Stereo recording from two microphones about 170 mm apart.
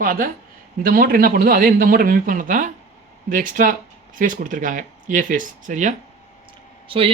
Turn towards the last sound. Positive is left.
turn(degrees=-30)  # may be behind; listen again after turning